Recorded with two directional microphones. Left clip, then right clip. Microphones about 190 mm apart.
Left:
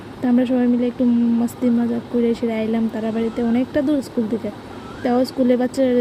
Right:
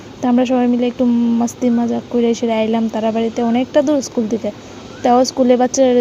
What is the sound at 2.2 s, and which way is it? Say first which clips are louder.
Speech: right 6 dB; 20° right (ahead or behind).